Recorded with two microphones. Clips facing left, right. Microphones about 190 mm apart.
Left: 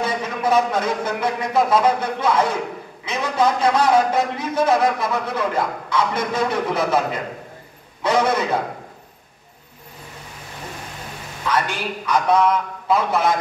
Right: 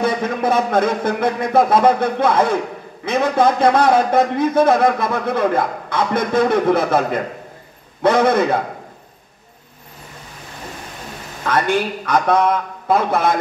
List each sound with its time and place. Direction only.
0.0 s a man's voice: 55° right (ahead or behind)
8.0 s a man's voice: 55° right (ahead or behind)
11.4 s a man's voice: 55° right (ahead or behind)